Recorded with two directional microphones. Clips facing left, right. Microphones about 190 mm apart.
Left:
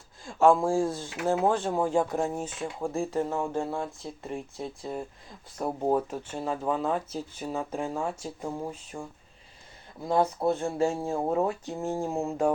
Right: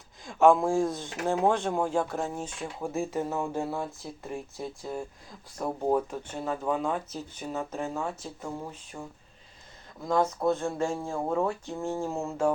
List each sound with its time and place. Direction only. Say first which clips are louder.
0.3 s speech: even; centre (ahead or behind)
10.1 s speech: left 1 dB; 30° left (ahead or behind)
11.0 s speech: left 2 dB; 20° left (ahead or behind)